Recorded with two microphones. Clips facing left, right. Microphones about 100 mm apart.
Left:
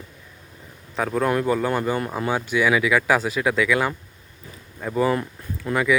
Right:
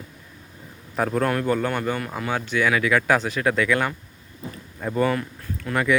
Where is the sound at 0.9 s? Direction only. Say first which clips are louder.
Left 1 dB; centre (ahead or behind).